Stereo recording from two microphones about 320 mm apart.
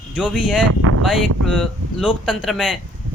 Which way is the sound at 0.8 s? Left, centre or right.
Right.